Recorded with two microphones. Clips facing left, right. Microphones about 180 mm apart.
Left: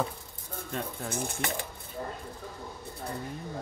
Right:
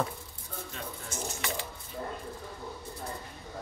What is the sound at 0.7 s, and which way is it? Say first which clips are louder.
Speech: left 9 dB; 55° left (ahead or behind).